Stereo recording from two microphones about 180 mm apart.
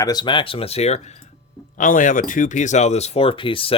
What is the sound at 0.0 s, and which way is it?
Speech, 20° left (ahead or behind).